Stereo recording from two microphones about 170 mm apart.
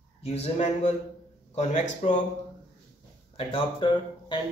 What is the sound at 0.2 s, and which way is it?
A man's voice, 40° left (ahead or behind).